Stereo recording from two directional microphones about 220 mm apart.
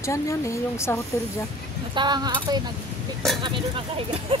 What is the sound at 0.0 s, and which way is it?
Speech, 15° left (ahead or behind).